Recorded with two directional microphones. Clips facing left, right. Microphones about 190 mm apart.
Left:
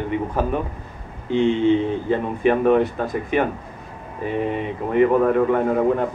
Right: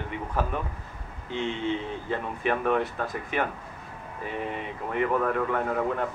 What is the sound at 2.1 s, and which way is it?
A man's voice, 25° left (ahead or behind).